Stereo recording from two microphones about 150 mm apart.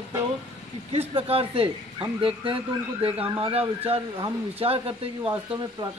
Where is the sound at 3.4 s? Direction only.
40° right (ahead or behind).